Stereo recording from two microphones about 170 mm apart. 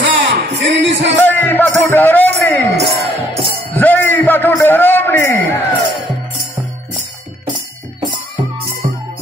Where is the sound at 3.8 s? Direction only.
10° left (ahead or behind).